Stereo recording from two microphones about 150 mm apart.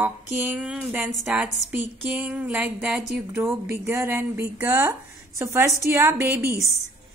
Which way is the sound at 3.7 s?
15° right (ahead or behind).